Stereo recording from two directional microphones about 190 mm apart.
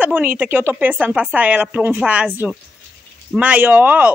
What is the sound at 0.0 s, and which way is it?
Speech, 10° right (ahead or behind).